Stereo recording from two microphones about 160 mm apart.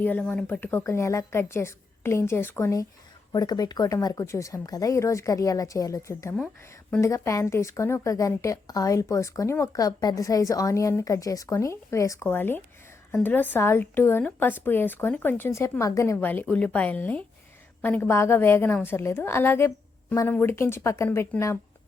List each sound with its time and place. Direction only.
0.0 s a woman's voice: 10° left (ahead or behind)